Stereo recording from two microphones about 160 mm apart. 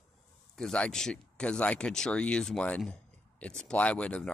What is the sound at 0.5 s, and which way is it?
Speech, 5° left (ahead or behind).